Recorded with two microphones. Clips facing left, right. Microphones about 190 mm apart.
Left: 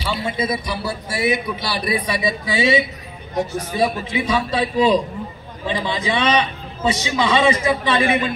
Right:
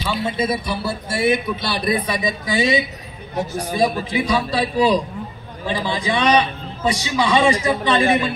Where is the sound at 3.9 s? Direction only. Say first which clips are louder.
Right 1 dB; 35° right (ahead or behind).